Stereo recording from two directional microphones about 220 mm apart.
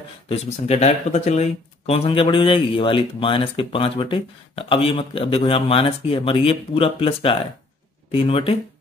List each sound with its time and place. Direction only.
0.3 s speech: 30° left (ahead or behind)